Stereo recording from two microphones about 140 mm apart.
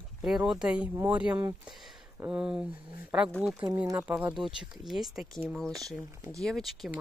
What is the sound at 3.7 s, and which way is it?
Speech, 15° right (ahead or behind).